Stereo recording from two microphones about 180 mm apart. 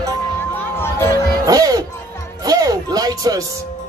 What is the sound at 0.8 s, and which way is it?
Music, 15° left (ahead or behind).